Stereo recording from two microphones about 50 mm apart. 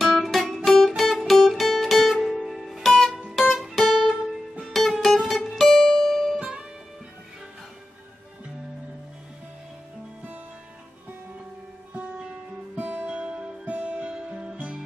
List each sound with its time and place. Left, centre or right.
0.0 s music: centre
3.2 s music: centre
12.7 s music: right
13.1 s music: centre